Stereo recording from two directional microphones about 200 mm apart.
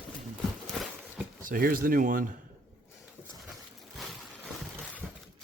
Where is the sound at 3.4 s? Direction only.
Centre (ahead or behind).